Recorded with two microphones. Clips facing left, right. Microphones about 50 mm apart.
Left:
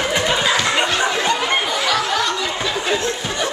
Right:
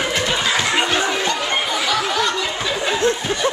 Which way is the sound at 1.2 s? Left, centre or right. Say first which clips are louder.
Left 2 dB; centre.